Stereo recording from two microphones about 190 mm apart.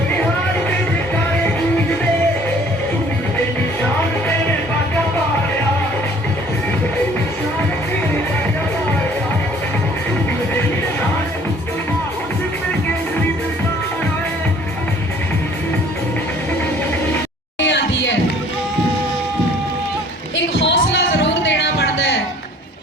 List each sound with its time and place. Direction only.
1.1 s music: 10° left (ahead or behind)
17.6 s music: 70° left (ahead or behind)
20.3 s music: 75° left (ahead or behind)